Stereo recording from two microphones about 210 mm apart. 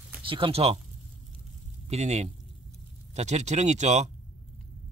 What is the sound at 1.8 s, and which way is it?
Speech, 30° right (ahead or behind).